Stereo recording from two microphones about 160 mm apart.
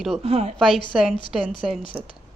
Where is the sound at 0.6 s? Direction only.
Centre (ahead or behind).